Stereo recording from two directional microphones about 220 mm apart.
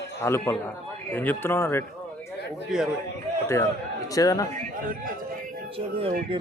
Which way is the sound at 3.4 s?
15° left (ahead or behind).